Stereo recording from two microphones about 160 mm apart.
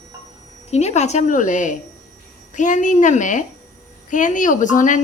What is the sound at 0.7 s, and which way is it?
Speech, 40° left (ahead or behind).